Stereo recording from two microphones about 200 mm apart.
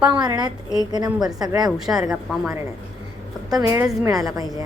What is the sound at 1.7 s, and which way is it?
Speech, centre (ahead or behind).